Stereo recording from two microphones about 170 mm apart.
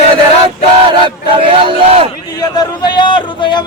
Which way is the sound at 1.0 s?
30° right (ahead or behind).